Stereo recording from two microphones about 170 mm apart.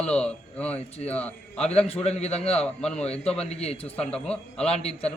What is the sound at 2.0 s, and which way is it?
Speech, 40° left (ahead or behind).